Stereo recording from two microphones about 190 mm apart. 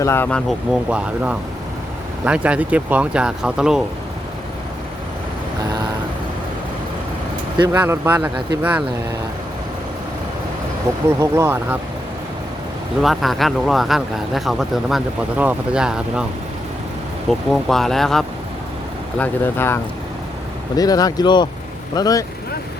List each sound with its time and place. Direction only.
0.0 s speech: 10° left (ahead or behind); by 3.8 s 5° right (ahead or behind)
7.7 s speech: 10° right (ahead or behind)
11.2 s speech: 15° right (ahead or behind)
13.0 s speech: centre (ahead or behind)
17.2 s speech: centre (ahead or behind); by 22.2 s 20° left (ahead or behind)